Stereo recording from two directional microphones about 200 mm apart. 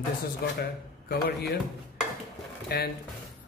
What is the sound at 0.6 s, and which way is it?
Speech, 50° left (ahead or behind).